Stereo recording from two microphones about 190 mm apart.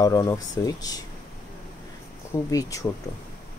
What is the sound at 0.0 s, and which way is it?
Speech, 20° left (ahead or behind).